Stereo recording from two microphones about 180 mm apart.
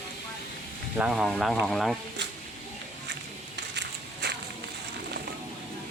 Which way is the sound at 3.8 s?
65° right (ahead or behind).